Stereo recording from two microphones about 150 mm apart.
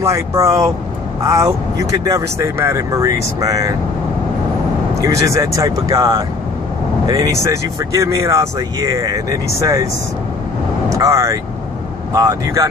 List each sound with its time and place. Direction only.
0.0 s speech: 20° right (ahead or behind)
5.0 s speech: 20° right (ahead or behind)
10.9 s speech: 20° right (ahead or behind)